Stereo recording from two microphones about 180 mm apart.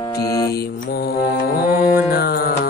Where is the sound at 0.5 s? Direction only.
55° left (ahead or behind).